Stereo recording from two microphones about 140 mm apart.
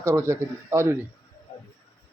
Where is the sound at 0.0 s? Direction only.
20° right (ahead or behind).